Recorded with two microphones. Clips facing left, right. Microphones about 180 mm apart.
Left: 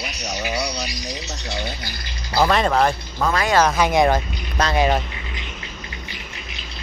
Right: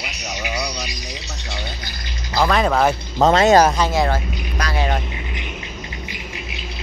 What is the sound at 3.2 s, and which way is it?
Speech, 25° right (ahead or behind).